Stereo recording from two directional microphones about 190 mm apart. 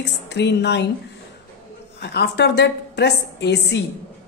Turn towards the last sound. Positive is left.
turn(degrees=60)  # may be behind; listen again after turning